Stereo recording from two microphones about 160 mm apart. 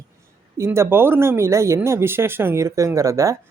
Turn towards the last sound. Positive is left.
turn(degrees=-20)  # may be behind; listen again after turning